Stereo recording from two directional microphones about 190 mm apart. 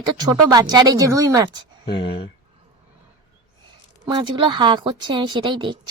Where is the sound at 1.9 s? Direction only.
25° left (ahead or behind).